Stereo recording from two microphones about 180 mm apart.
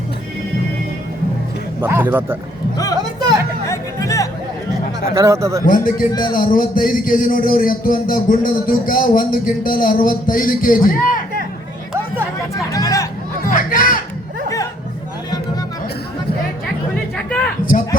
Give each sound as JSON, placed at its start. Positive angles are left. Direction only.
{"t": 1.8, "sound": "speech", "side_deg": -15}
{"t": 3.7, "sound": "music", "side_deg": 20}
{"t": 5.1, "sound": "speech", "side_deg": -15}
{"t": 5.6, "sound": "a man's voice", "side_deg": 50}
{"t": 6.1, "sound": "speech", "side_deg": 25}
{"t": 6.3, "sound": "a man's voice", "side_deg": 50}
{"t": 12.5, "sound": "a sound", "side_deg": 20}
{"t": 13.5, "sound": "music", "side_deg": 50}
{"t": 16.9, "sound": "chatter", "side_deg": 5}